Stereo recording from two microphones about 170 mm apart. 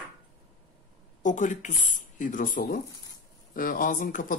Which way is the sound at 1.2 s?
45° left (ahead or behind).